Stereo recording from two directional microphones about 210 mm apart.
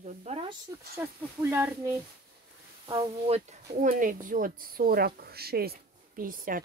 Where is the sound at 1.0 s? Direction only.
10° right (ahead or behind).